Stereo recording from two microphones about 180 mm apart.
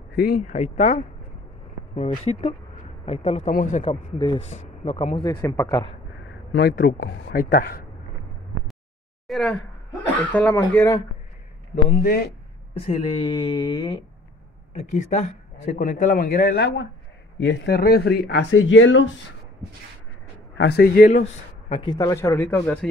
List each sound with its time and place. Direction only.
0.1 s a man's voice: 60° left (ahead or behind); by 5.9 s 20° left (ahead or behind)
6.5 s speech: 60° left (ahead or behind)
9.3 s speech: centre (ahead or behind)
11.9 s speech: 55° left (ahead or behind)
12.8 s speech: 30° left (ahead or behind)
15.0 s a man's voice: 40° left (ahead or behind); by 19.1 s 90° left
20.5 s speech: 65° left (ahead or behind)
21.6 s speech: 30° left (ahead or behind); by 22.8 s 10° left (ahead or behind)